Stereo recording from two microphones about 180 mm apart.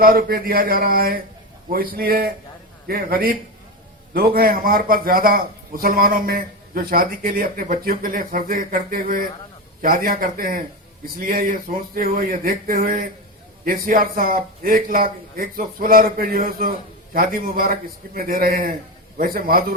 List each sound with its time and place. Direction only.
0.0 s a man's voice: 55° right (ahead or behind)